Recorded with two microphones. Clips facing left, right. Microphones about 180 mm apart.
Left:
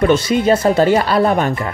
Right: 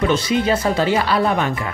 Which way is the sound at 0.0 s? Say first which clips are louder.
Left 4 dB; 50° left (ahead or behind).